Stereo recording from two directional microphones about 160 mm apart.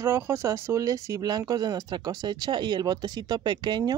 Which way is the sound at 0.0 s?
15° right (ahead or behind).